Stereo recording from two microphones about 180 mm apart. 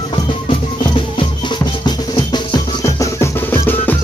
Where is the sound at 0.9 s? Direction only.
25° left (ahead or behind).